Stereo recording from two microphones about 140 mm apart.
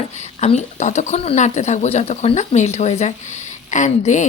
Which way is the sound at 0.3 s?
55° left (ahead or behind).